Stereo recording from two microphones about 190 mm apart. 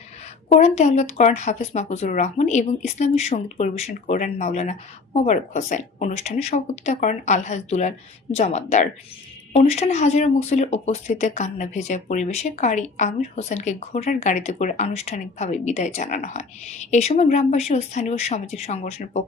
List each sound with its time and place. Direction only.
0.5 s speech: 35° left (ahead or behind)